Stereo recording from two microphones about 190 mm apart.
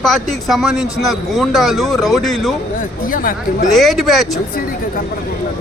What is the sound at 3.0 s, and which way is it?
Speech, 45° left (ahead or behind).